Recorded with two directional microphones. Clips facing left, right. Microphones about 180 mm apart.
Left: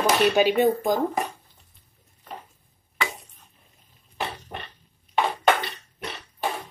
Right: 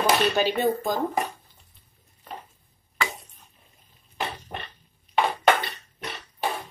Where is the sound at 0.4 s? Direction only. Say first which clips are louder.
Left 4 dB; 15° left (ahead or behind).